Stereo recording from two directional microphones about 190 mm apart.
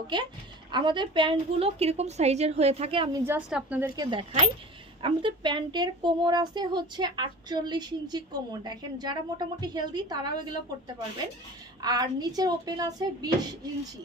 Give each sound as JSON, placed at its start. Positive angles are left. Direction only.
{"t": 0.1, "sound": "a woman's voice", "side_deg": -25}
{"t": 3.3, "sound": "a woman's voice", "side_deg": -5}
{"t": 3.9, "sound": "a woman's voice", "side_deg": -25}
{"t": 11.8, "sound": "a woman's voice", "side_deg": -20}